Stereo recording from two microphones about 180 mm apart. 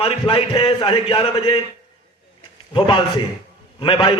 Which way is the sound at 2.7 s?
25° left (ahead or behind).